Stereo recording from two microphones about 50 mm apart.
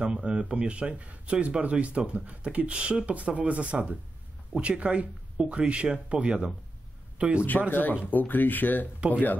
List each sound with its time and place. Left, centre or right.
0.0 s speech: right
8.1 s speech: left